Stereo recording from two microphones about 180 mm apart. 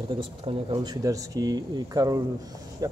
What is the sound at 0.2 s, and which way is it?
Speech, 30° right (ahead or behind).